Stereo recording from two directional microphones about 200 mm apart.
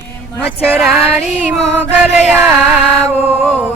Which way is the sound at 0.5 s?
5° right (ahead or behind).